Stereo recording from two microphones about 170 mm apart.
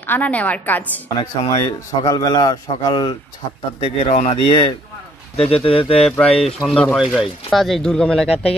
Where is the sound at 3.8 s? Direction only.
35° left (ahead or behind).